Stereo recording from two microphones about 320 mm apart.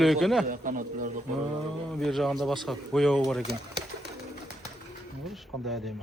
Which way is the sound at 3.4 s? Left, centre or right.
Right.